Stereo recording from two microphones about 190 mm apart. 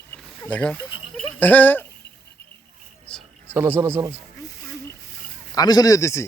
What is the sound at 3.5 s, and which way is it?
Speech, 10° right (ahead or behind).